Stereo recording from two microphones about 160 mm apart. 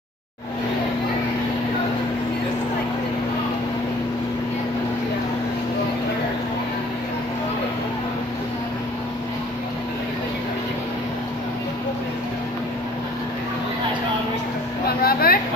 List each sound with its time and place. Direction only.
14.9 s vehicle: 70° left (ahead or behind)